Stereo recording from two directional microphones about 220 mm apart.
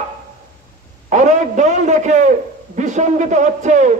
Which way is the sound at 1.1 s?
35° right (ahead or behind).